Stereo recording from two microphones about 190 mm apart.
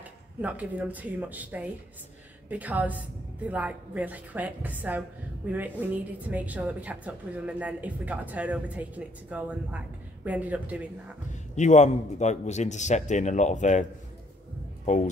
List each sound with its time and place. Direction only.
0.4 s a woman's voice: 5° right (ahead or behind)
11.5 s a man's voice: 40° left (ahead or behind)